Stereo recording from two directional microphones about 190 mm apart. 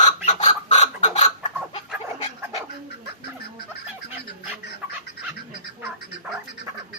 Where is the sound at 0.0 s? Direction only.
40° left (ahead or behind).